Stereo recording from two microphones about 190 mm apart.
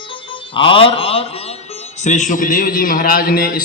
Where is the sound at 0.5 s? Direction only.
25° left (ahead or behind).